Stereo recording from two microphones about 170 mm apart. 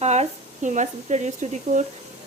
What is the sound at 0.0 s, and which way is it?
Speech, 40° right (ahead or behind).